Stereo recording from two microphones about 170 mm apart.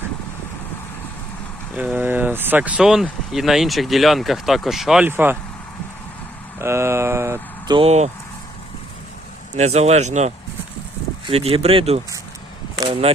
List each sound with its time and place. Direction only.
1.7 s speech: 10° right (ahead or behind)
6.6 s speech: 15° right (ahead or behind)
7.7 s speech: 35° right (ahead or behind)
9.6 s speech: 40° right (ahead or behind)
12.7 s a sound: 25° right (ahead or behind)